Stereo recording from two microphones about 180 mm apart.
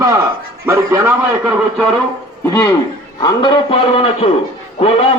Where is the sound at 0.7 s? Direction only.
15° right (ahead or behind).